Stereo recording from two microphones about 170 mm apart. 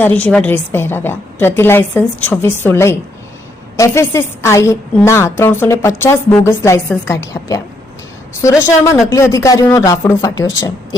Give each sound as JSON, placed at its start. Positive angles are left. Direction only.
{"t": 0.0, "sound": "a woman's voice", "side_deg": 10}
{"t": 8.6, "sound": "a woman's voice", "side_deg": 15}